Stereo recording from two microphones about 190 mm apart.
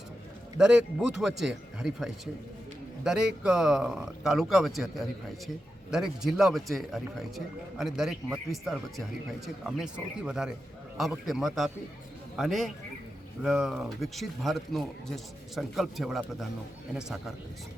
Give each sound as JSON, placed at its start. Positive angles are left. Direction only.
{"t": 0.6, "sound": "a man's voice", "side_deg": -5}